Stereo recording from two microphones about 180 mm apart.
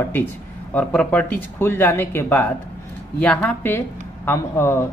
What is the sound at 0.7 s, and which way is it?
Speech, 10° left (ahead or behind).